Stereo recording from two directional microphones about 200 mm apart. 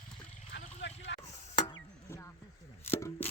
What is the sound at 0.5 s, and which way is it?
Vehicle, 60° left (ahead or behind).